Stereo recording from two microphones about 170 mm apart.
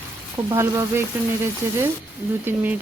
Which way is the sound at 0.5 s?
15° right (ahead or behind).